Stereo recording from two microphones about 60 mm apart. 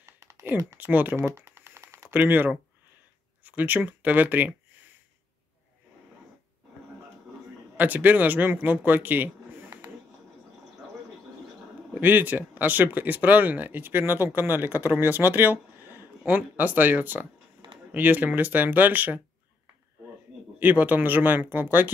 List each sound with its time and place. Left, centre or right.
0.0 s a sound: right
0.7 s speech: right
1.1 s a sound: right
2.0 s speech: right
7.7 s a man's voice: right
11.9 s speech: right
20.5 s speech: right